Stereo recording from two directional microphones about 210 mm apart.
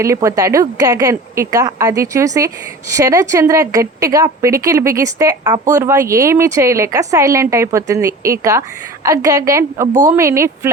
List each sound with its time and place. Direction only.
0.0 s a woman's voice: 15° right (ahead or behind)